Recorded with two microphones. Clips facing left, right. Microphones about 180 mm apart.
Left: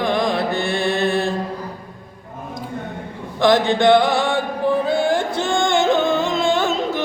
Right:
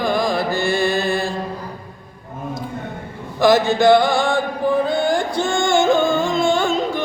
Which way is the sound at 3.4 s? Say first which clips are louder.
Right 1 dB; 5° right (ahead or behind).